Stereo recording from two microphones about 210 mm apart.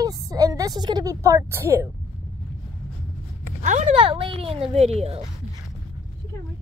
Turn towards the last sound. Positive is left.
turn(degrees=-30)  # may be behind; listen again after turning